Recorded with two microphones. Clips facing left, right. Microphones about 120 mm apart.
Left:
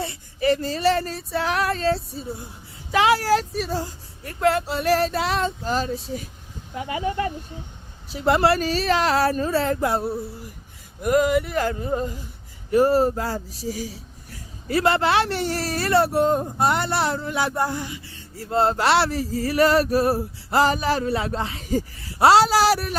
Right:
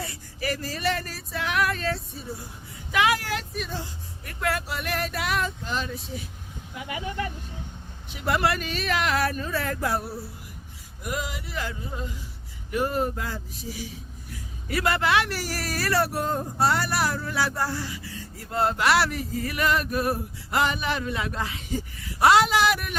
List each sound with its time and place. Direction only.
0.0 s speech: 25° left (ahead or behind)
11.0 s a sound: 50° left (ahead or behind)
12.7 s speech: 35° left (ahead or behind)
14.7 s speech: 30° left (ahead or behind)